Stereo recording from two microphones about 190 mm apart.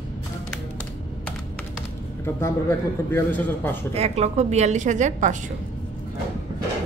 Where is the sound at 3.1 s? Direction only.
10° left (ahead or behind).